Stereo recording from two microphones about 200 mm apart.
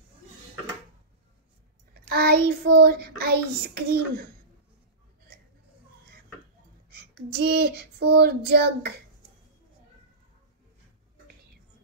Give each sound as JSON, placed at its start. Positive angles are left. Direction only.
{"t": 2.0, "sound": "child singing", "side_deg": -50}
{"t": 7.2, "sound": "child singing", "side_deg": -50}